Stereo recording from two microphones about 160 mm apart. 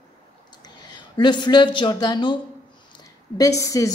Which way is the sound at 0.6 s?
25° left (ahead or behind).